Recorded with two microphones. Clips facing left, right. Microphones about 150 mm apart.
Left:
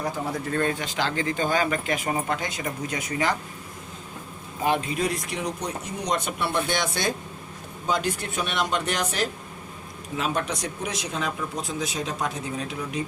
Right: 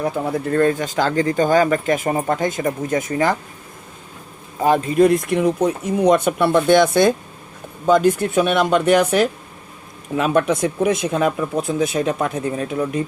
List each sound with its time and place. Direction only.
0.0 s speech: 50° right (ahead or behind)
4.6 s speech: 45° right (ahead or behind)